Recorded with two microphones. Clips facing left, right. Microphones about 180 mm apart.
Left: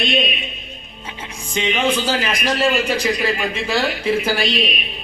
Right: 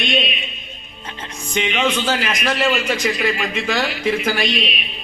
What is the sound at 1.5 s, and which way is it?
A man's voice, 35° left (ahead or behind).